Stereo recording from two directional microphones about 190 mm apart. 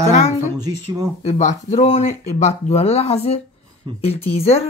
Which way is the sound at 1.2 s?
35° left (ahead or behind).